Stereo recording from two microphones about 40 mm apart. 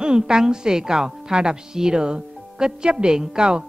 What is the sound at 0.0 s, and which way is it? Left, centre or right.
A woman's voice, centre.